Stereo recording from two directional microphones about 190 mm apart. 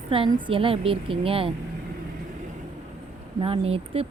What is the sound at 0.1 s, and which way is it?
Speech, 25° right (ahead or behind).